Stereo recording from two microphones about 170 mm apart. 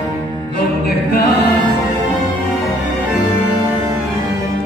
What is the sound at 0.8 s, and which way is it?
A capella, 70° left (ahead or behind).